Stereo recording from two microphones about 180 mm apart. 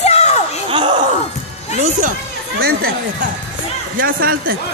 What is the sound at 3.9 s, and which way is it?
Speech, 55° right (ahead or behind).